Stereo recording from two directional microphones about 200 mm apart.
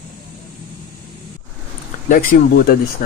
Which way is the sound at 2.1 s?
45° left (ahead or behind).